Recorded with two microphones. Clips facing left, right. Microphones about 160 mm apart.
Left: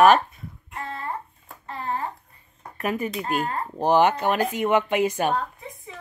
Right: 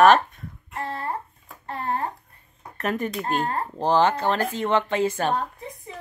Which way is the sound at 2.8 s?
5° left (ahead or behind).